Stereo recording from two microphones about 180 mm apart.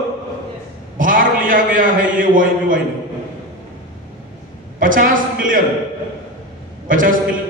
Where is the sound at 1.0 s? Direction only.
50° right (ahead or behind).